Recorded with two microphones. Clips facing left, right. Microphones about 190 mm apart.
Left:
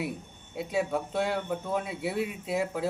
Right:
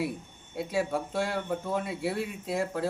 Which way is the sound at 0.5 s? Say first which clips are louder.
Even; centre (ahead or behind).